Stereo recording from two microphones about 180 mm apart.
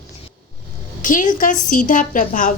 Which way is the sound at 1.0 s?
45° left (ahead or behind).